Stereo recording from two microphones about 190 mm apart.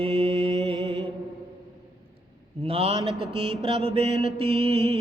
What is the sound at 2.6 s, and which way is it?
Speech, 30° right (ahead or behind).